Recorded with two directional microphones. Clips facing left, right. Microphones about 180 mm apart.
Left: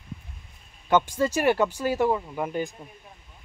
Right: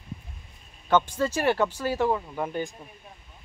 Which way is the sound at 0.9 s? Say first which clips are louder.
Left 1 dB; 10° left (ahead or behind).